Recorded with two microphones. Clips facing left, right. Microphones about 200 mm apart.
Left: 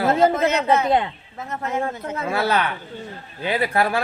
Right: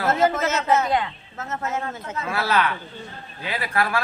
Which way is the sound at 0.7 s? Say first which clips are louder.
Even; 15° left (ahead or behind).